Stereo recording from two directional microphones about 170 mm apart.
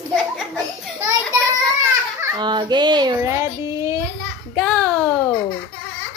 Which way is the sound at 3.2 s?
15° right (ahead or behind).